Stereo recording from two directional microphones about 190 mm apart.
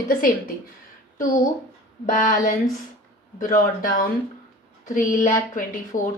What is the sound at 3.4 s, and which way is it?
A woman's voice, 45° left (ahead or behind).